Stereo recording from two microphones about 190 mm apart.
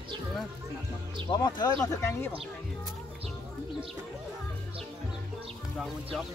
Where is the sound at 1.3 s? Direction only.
20° left (ahead or behind).